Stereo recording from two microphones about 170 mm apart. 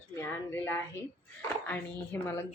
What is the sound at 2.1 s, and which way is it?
Speech, 15° left (ahead or behind).